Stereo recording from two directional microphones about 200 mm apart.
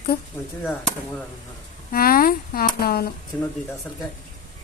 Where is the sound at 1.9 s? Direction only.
50° left (ahead or behind).